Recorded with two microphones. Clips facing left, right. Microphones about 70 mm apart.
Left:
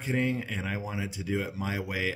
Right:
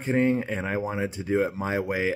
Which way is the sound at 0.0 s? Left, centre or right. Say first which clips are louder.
Right 6 dB; right.